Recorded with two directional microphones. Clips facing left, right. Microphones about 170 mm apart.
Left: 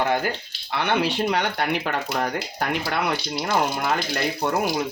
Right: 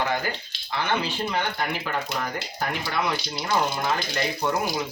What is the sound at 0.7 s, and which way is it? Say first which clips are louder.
Speech: left 4 dB; 65° left (ahead or behind).